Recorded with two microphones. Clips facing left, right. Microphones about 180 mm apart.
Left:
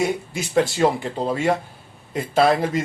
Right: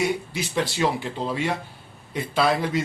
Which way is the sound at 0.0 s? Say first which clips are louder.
Left 2 dB; 50° left (ahead or behind).